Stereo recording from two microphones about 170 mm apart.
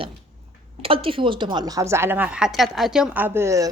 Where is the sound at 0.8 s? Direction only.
35° right (ahead or behind).